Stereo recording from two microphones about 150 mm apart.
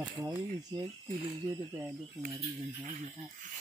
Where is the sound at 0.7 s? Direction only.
25° right (ahead or behind).